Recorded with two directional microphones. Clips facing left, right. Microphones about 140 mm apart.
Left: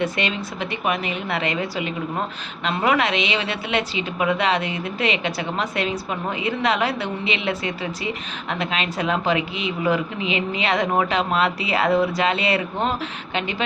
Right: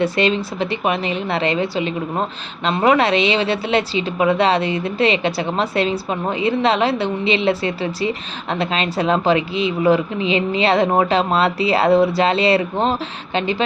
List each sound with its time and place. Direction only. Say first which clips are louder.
0.0 s a woman's voice: right 6 dB; 30° right (ahead or behind)